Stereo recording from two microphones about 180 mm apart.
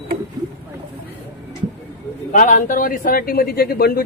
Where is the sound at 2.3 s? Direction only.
45° left (ahead or behind).